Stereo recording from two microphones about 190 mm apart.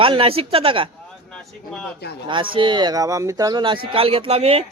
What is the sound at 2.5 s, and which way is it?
Speech, 25° right (ahead or behind).